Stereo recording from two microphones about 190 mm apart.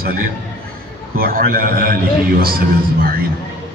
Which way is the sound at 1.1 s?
50° right (ahead or behind).